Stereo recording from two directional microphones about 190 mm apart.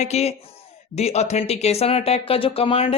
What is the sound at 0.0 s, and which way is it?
Speech, 35° left (ahead or behind).